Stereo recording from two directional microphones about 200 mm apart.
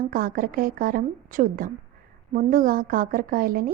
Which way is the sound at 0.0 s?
45° right (ahead or behind).